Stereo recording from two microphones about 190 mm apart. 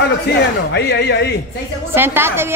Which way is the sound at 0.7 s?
60° left (ahead or behind).